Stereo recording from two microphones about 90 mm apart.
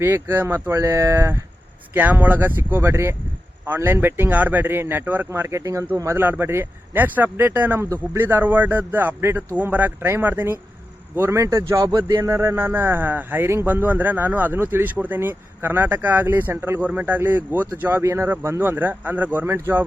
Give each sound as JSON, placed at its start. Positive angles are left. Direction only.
{"t": 0.0, "sound": "speech", "side_deg": -25}
{"t": 1.9, "sound": "speech", "side_deg": -20}
{"t": 6.1, "sound": "speech", "side_deg": -25}